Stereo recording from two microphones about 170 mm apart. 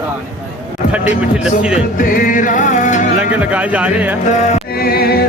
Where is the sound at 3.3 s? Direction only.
10° right (ahead or behind).